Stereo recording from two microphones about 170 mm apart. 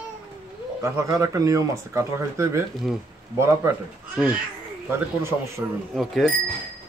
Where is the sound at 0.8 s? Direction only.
20° right (ahead or behind).